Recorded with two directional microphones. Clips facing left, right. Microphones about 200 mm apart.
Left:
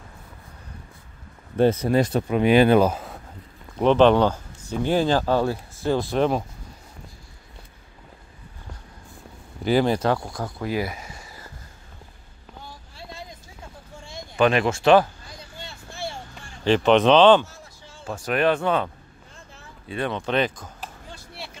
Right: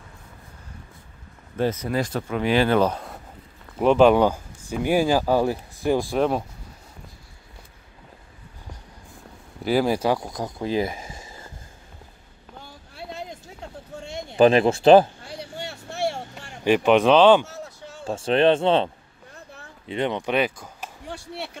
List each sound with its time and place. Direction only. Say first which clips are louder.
1.6 s speech: left 5 dB; 30° left (ahead or behind); by 3.2 s 5° left (ahead or behind)
3.7 s speech: even; 10° right (ahead or behind)
9.7 s speech: left 1 dB; 5° right (ahead or behind); by 11.5 s 25° right (ahead or behind)
12.9 s a sound: right 7 dB; 65° right (ahead or behind)
14.3 s speech: right 4 dB; 30° right (ahead or behind)
15.2 s a sound: right 7 dB; 70° right (ahead or behind)
16.6 s speech: even; 10° right (ahead or behind)
17.5 s a sound: right 8 dB; 70° right (ahead or behind)
18.0 s speech: right 3 dB; 25° right (ahead or behind)
19.9 s speech: right 1 dB; 20° right (ahead or behind)